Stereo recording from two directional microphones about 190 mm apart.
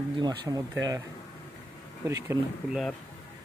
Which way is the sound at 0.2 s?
20° right (ahead or behind).